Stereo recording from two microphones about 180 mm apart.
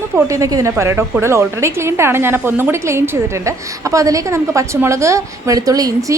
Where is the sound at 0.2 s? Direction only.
20° right (ahead or behind).